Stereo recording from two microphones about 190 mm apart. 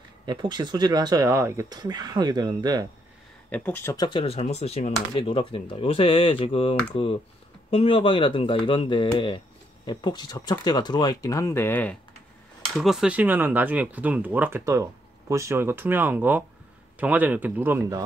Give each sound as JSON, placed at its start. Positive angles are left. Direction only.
{"t": 0.3, "sound": "speech", "side_deg": -20}
{"t": 3.4, "sound": "speech", "side_deg": 10}